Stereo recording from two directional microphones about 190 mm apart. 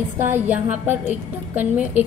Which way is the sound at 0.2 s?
10° right (ahead or behind).